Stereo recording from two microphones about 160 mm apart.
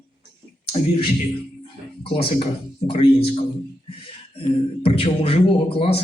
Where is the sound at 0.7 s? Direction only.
35° left (ahead or behind).